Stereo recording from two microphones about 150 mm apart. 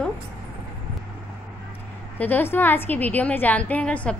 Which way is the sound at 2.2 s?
15° left (ahead or behind).